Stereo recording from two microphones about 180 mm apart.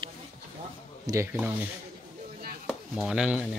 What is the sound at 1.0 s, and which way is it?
Speech, 15° right (ahead or behind).